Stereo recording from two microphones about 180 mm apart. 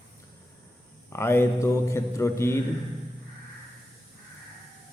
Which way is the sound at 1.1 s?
15° left (ahead or behind).